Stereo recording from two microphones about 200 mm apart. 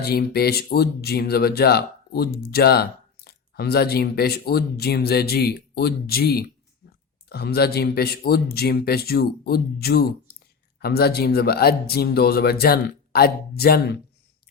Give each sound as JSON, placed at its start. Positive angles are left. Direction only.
{"t": 0.0, "sound": "speech", "side_deg": 50}